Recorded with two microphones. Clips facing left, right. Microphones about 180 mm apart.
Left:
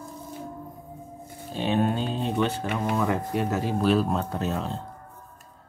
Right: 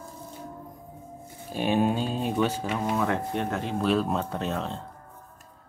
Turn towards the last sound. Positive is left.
turn(degrees=0)  # may be behind; listen again after turning